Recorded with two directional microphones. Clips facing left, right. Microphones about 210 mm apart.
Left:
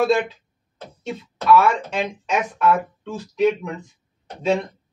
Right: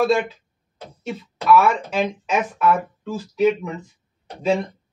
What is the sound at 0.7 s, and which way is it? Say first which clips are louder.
Speech: even; 10° right (ahead or behind).